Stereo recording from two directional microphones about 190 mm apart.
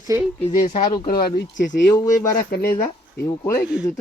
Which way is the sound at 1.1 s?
50° left (ahead or behind).